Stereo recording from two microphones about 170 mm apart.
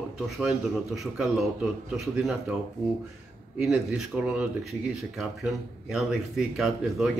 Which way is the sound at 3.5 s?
5° right (ahead or behind).